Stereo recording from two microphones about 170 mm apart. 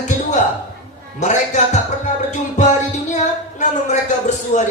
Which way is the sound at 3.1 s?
45° left (ahead or behind).